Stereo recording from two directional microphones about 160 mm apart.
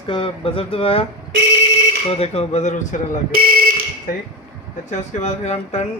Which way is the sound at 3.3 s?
65° right (ahead or behind).